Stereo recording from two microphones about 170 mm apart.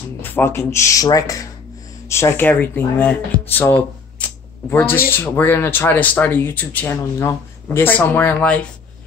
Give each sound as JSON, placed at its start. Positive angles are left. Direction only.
{"t": 0.2, "sound": "speech", "side_deg": 10}
{"t": 4.2, "sound": "a sound", "side_deg": 10}
{"t": 4.6, "sound": "speech", "side_deg": 10}